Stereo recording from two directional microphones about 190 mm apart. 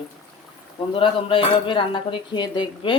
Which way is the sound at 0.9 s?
25° left (ahead or behind).